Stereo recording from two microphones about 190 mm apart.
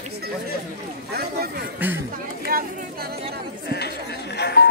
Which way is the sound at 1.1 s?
55° right (ahead or behind).